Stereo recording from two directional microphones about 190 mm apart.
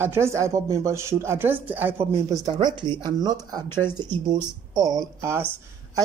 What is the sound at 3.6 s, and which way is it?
Speech, 10° left (ahead or behind).